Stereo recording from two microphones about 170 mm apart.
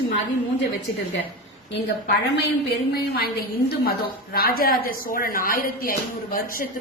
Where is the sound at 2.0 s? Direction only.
70° left (ahead or behind).